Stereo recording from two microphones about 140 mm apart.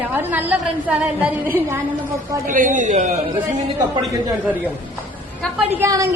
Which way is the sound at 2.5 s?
70° right (ahead or behind).